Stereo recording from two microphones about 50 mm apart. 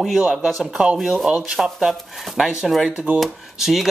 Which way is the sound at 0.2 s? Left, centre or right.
Right.